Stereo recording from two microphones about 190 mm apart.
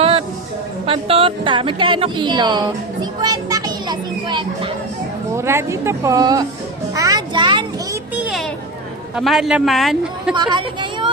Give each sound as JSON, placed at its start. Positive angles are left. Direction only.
{"t": 0.9, "sound": "a woman's voice", "side_deg": -30}
{"t": 5.4, "sound": "a woman's voice", "side_deg": -15}
{"t": 6.9, "sound": "music", "side_deg": -20}
{"t": 8.1, "sound": "children playing", "side_deg": 0}
{"t": 9.1, "sound": "a man's voice", "side_deg": 0}
{"t": 10.3, "sound": "a woman's voice", "side_deg": -25}